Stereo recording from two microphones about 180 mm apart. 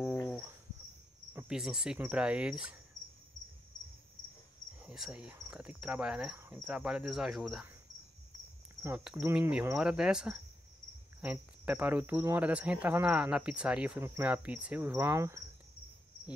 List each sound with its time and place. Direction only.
1.3 s speech: 5° right (ahead or behind)
4.8 s speech: 5° right (ahead or behind)
8.8 s speech: 5° right (ahead or behind)